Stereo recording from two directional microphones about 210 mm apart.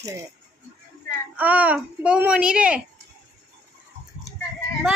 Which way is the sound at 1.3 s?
5° right (ahead or behind).